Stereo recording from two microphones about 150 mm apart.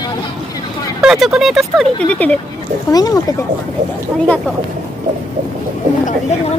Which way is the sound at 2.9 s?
25° left (ahead or behind).